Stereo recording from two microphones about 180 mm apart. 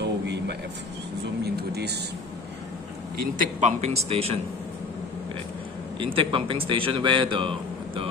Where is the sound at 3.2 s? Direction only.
45° right (ahead or behind).